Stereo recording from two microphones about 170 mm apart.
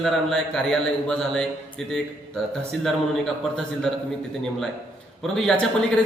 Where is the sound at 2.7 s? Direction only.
Centre (ahead or behind).